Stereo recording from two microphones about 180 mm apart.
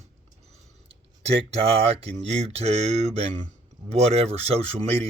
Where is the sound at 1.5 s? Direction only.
35° right (ahead or behind).